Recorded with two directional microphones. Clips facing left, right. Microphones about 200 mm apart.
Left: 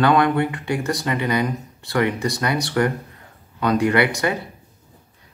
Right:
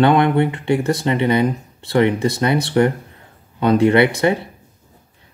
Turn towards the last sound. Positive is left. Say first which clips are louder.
# right 5 dB
turn(degrees=-25)  # may be behind; listen again after turning